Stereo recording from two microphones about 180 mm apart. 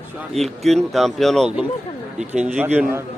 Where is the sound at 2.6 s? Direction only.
10° right (ahead or behind).